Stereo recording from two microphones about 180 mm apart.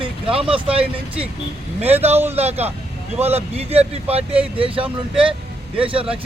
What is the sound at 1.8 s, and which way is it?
Speech, 35° right (ahead or behind).